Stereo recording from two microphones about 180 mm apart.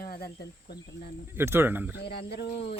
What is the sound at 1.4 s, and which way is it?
Speech, 15° right (ahead or behind).